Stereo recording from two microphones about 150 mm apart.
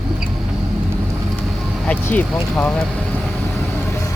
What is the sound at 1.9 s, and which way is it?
Speech, 10° left (ahead or behind).